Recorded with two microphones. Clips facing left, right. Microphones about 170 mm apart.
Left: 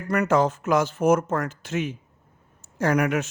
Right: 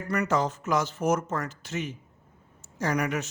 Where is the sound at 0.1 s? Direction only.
55° left (ahead or behind).